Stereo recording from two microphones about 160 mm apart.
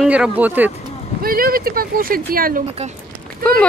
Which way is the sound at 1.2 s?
65° right (ahead or behind).